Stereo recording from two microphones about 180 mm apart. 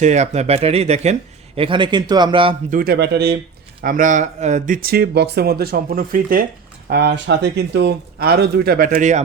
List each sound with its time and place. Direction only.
0.0 s a man's voice: 40° right (ahead or behind)
2.6 s speech: 55° right (ahead or behind)
3.8 s speech: 50° right (ahead or behind)
6.9 s speech: 70° right (ahead or behind); by 9.2 s 45° right (ahead or behind)